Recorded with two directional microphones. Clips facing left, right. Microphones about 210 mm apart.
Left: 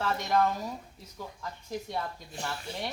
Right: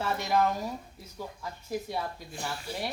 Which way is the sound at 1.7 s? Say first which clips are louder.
Right 2 dB; 5° right (ahead or behind).